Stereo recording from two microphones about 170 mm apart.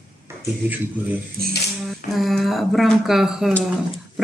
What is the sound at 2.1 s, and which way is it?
A woman's voice, centre (ahead or behind).